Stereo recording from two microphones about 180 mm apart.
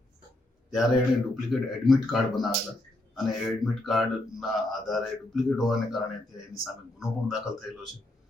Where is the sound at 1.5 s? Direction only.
Centre (ahead or behind).